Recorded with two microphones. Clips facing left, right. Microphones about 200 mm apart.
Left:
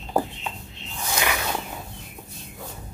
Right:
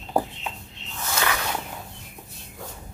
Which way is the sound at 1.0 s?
15° left (ahead or behind).